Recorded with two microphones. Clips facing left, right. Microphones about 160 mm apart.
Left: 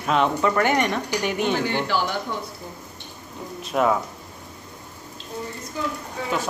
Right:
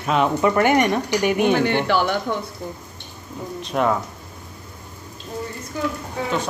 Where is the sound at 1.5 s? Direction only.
60° right (ahead or behind).